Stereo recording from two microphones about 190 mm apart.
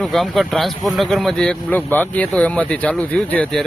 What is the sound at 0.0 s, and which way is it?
Speech, centre (ahead or behind).